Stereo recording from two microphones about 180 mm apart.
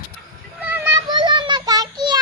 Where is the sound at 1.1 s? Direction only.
25° right (ahead or behind).